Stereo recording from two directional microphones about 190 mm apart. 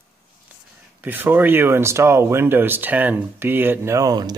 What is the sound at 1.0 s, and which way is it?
Speech, 10° right (ahead or behind).